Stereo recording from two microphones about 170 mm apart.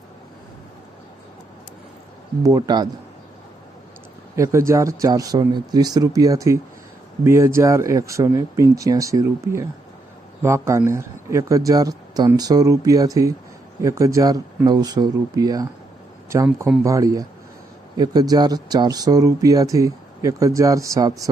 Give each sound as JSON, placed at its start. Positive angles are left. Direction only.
{"t": 2.4, "sound": "speech", "side_deg": -20}
{"t": 4.4, "sound": "speech", "side_deg": -15}